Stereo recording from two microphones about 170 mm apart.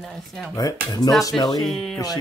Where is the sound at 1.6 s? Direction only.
Centre (ahead or behind).